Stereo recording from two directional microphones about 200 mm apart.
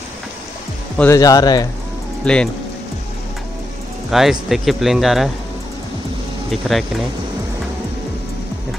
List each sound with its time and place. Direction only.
0.9 s speech: 15° left (ahead or behind)
2.2 s speech: 5° left (ahead or behind)
4.1 s speech: centre (ahead or behind)
6.5 s speech: centre (ahead or behind)